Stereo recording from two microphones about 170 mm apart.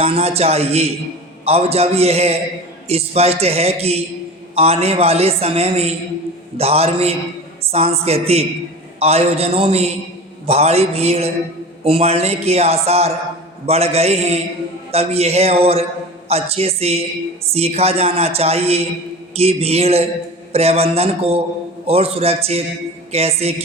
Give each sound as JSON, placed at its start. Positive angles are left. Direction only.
{"t": 0.0, "sound": "a woman's voice", "side_deg": -35}